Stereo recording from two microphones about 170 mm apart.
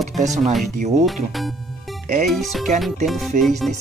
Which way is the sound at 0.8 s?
45° right (ahead or behind).